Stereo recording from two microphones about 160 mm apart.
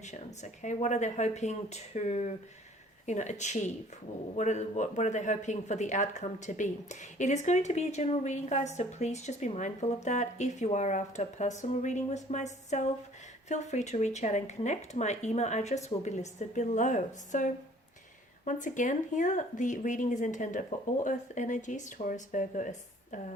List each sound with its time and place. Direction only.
0.0 s speech: 45° left (ahead or behind)